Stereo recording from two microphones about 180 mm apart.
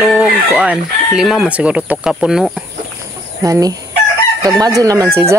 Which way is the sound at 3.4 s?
20° right (ahead or behind).